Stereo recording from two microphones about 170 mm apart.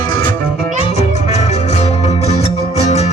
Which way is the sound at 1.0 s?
40° left (ahead or behind).